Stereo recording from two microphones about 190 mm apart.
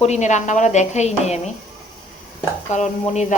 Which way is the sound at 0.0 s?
35° left (ahead or behind).